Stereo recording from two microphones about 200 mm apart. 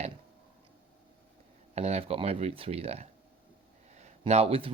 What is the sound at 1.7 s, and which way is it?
Speech, 35° right (ahead or behind).